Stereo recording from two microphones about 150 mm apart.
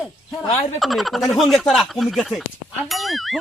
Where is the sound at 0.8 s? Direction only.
Centre (ahead or behind).